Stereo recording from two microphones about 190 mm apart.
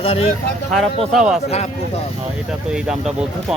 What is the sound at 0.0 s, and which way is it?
Speech, 30° left (ahead or behind).